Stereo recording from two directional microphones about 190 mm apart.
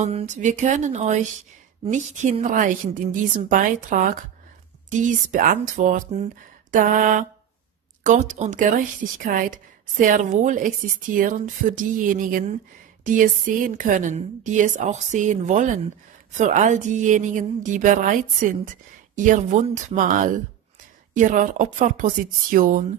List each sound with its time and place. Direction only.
0.0 s a woman's voice: 35° right (ahead or behind)